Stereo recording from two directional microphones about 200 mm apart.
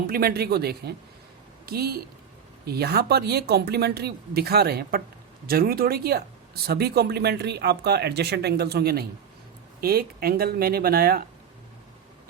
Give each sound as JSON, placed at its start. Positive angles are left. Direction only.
{"t": 0.1, "sound": "a woman's voice", "side_deg": -50}